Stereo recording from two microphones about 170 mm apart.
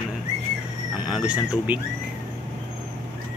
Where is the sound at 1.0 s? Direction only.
5° right (ahead or behind).